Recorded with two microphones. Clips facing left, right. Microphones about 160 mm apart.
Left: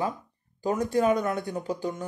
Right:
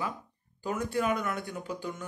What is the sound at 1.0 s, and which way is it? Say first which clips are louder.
Speech: left 6 dB; 25° left (ahead or behind).